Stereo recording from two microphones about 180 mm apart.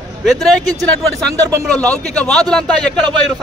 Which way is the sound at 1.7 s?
5° left (ahead or behind).